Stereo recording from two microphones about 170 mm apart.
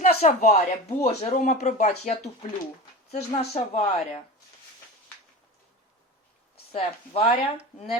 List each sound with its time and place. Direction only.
0.0 s speech: 40° left (ahead or behind)
3.1 s speech: 40° left (ahead or behind)
6.7 s speech: 35° left (ahead or behind)